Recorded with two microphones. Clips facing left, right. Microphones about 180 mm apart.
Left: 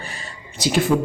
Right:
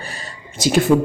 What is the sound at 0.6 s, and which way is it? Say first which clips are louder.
Speech: right 4 dB; 45° right (ahead or behind).